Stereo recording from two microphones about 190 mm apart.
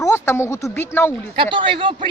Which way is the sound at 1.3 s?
25° right (ahead or behind).